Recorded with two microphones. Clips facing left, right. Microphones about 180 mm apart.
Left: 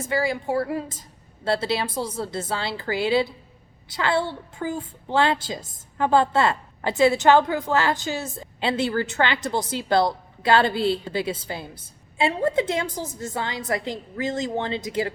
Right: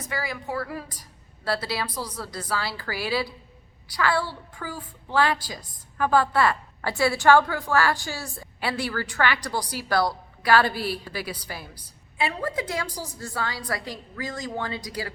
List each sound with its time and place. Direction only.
0.0 s a woman's voice: 25° left (ahead or behind)